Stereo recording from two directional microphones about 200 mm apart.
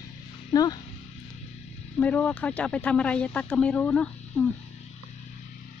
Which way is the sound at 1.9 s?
5° left (ahead or behind).